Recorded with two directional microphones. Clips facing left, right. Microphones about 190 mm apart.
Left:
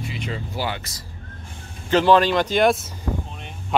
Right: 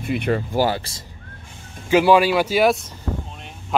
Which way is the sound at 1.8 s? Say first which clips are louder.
Right 2 dB; 10° right (ahead or behind).